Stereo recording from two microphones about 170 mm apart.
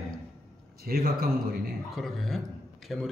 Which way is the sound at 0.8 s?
65° right (ahead or behind).